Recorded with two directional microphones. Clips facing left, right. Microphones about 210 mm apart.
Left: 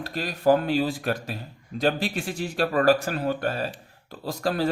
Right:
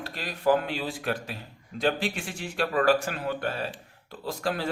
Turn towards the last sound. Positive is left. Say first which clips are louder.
# left 4 dB
turn(degrees=40)  # may be behind; listen again after turning